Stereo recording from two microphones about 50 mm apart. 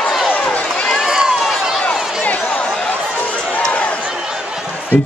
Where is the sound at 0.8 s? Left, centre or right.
Centre.